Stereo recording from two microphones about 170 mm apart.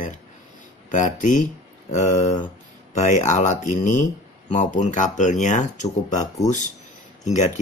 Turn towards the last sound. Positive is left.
turn(degrees=45)  # may be behind; listen again after turning